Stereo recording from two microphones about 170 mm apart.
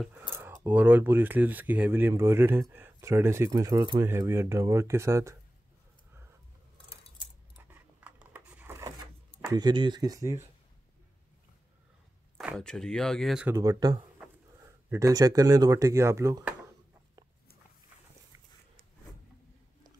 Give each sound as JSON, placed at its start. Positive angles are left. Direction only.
{"t": 0.4, "sound": "speech", "side_deg": -10}
{"t": 7.5, "sound": "keys jangling", "side_deg": -10}
{"t": 9.5, "sound": "speech", "side_deg": -25}
{"t": 12.5, "sound": "speech", "side_deg": 5}
{"t": 13.6, "sound": "speech", "side_deg": -20}